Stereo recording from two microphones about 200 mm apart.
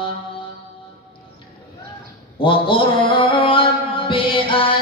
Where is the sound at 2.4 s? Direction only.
25° left (ahead or behind).